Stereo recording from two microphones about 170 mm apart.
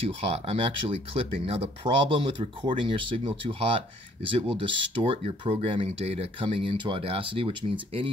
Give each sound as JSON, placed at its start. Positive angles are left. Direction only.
{"t": 0.2, "sound": "speech", "side_deg": -35}